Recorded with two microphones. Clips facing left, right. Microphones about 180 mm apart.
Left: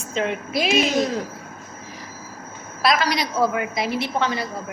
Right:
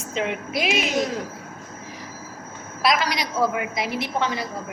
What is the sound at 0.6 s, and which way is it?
Speech, 35° left (ahead or behind).